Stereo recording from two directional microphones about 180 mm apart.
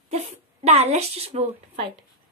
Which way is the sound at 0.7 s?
35° right (ahead or behind).